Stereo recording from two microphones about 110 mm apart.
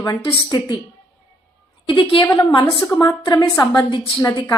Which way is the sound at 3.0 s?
35° left (ahead or behind).